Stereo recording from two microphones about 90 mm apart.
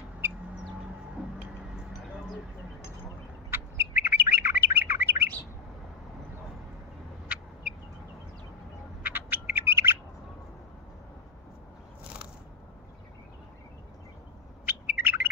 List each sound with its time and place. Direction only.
3.4 s bird: 25° right (ahead or behind)
9.0 s bird: 20° right (ahead or behind)
14.7 s bird: 20° right (ahead or behind)